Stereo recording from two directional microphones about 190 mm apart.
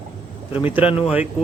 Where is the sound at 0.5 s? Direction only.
10° right (ahead or behind).